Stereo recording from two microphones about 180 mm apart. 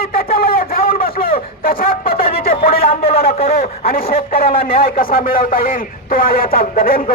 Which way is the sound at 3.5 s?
55° left (ahead or behind).